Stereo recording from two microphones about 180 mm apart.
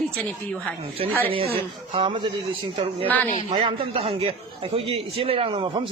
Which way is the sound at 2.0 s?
25° right (ahead or behind).